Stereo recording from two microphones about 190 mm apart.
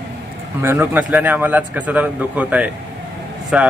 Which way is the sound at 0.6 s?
10° right (ahead or behind).